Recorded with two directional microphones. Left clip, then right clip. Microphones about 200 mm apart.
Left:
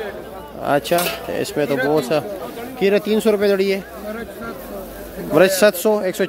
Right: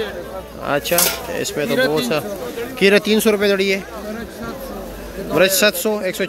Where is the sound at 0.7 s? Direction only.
15° left (ahead or behind).